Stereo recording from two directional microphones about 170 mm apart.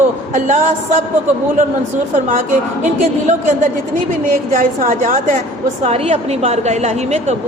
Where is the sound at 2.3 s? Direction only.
45° right (ahead or behind).